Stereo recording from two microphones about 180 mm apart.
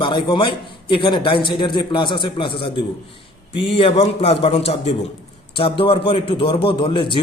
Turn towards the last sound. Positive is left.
turn(degrees=25)  # may be behind; listen again after turning